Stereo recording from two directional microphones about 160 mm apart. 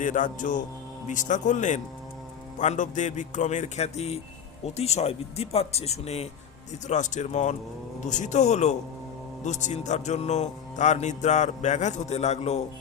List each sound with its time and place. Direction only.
0.0 s music: 55° left (ahead or behind)
4.6 s speech: 40° left (ahead or behind)
6.8 s music: 50° left (ahead or behind)